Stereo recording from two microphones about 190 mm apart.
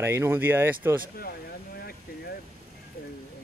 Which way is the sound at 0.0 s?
15° right (ahead or behind).